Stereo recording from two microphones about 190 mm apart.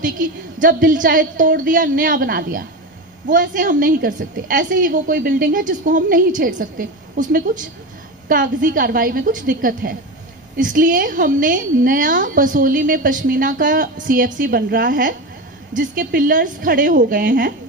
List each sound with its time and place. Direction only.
0.0 s a woman's voice: 45° right (ahead or behind)